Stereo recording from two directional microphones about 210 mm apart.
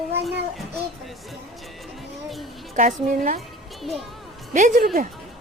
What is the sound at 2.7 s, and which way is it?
Speech, 40° right (ahead or behind).